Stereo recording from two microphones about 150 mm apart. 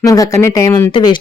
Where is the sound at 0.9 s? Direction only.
35° left (ahead or behind).